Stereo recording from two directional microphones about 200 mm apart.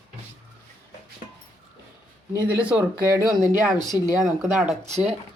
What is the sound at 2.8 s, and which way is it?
Speech, 15° right (ahead or behind).